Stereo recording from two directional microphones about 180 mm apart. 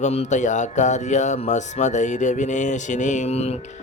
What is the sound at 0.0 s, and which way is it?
Speech, 35° left (ahead or behind).